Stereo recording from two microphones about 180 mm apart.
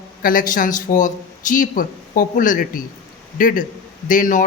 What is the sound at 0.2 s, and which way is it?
Speech, 50° left (ahead or behind).